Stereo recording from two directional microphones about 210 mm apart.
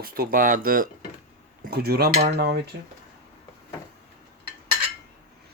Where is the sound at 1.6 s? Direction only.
50° right (ahead or behind).